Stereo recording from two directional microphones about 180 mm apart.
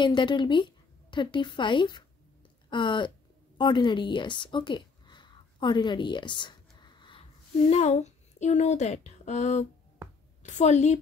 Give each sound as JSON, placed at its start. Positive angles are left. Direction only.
{"t": 0.0, "sound": "speech", "side_deg": 25}
{"t": 3.5, "sound": "a sound", "side_deg": 25}
{"t": 7.7, "sound": "a woman's voice", "side_deg": 40}